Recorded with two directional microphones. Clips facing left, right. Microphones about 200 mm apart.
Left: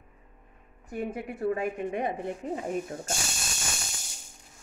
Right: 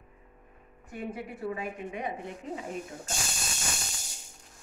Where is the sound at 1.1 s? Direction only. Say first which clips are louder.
Left 7 dB; 50° left (ahead or behind).